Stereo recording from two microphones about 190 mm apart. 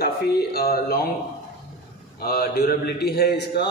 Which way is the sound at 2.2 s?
55° left (ahead or behind).